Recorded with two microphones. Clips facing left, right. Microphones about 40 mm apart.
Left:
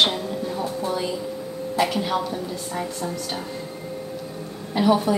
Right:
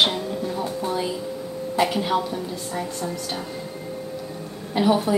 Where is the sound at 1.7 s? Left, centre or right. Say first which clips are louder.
Right 1 dB; centre.